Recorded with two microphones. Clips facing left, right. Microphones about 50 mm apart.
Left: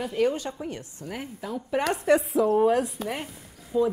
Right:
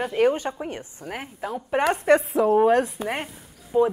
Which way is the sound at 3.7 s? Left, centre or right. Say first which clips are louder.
Right 4 dB; right.